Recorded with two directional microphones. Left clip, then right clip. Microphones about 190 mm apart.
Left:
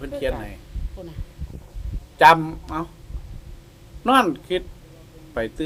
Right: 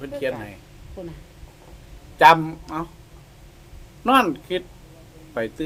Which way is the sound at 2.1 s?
Centre (ahead or behind).